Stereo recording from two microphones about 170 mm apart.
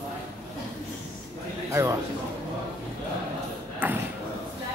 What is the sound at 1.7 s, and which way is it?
Speech, 20° right (ahead or behind).